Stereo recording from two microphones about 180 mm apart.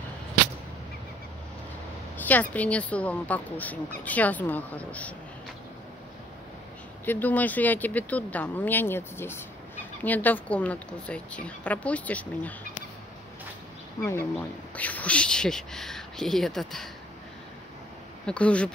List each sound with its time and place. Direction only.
2.1 s speech: 10° left (ahead or behind)
7.1 s speech: 10° left (ahead or behind)
14.8 s speech: 10° left (ahead or behind)
18.2 s speech: 5° left (ahead or behind)